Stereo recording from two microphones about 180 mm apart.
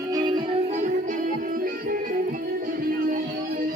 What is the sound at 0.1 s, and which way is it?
Music, 25° right (ahead or behind).